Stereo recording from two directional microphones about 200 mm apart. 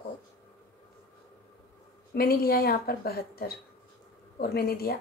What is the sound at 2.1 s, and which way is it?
Speech, 50° left (ahead or behind).